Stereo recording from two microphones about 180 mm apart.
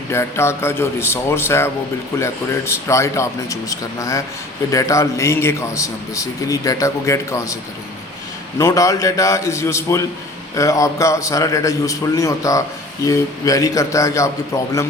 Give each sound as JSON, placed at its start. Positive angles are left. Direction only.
{"t": 0.1, "sound": "a man's voice", "side_deg": 15}